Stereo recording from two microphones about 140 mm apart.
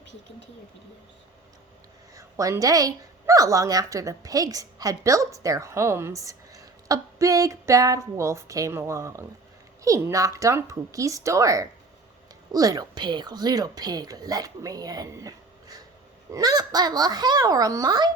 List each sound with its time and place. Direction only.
2.1 s a woman's voice: 25° right (ahead or behind)